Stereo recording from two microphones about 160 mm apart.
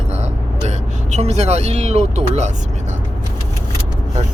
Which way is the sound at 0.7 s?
45° right (ahead or behind).